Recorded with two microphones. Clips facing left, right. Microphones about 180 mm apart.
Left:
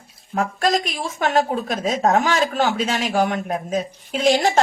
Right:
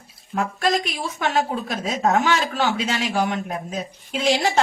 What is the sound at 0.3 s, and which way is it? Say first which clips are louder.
Speech: left 2 dB; 40° left (ahead or behind).